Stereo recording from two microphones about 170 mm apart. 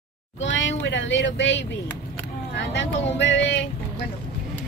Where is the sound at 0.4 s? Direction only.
90° left.